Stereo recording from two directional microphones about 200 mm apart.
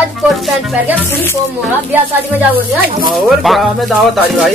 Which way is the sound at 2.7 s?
50° right (ahead or behind).